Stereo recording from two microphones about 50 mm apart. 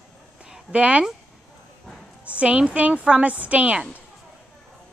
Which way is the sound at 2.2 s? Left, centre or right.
Right.